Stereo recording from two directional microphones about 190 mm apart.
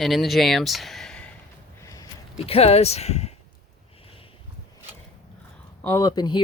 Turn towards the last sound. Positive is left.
turn(degrees=20)  # may be behind; listen again after turning